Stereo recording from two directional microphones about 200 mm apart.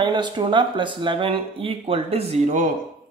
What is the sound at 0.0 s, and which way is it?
Speech, 20° right (ahead or behind).